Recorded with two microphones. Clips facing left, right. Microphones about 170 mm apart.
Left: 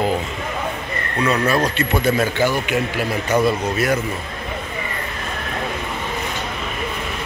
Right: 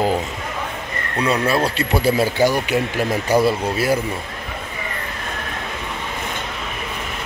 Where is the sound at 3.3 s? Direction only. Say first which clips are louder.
Right 1 dB; 35° right (ahead or behind).